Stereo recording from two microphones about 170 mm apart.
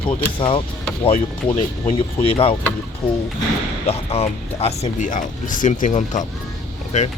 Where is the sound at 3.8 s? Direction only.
35° left (ahead or behind).